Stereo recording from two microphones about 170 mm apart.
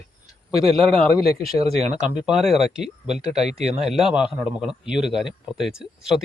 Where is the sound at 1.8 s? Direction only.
45° right (ahead or behind).